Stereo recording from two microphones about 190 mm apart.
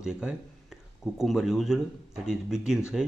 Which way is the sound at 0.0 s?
5° right (ahead or behind).